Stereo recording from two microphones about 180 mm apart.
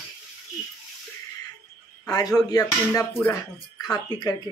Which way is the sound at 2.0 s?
20° left (ahead or behind).